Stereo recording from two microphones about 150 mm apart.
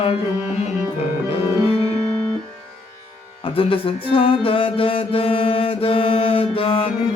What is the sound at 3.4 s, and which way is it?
Music, 35° left (ahead or behind).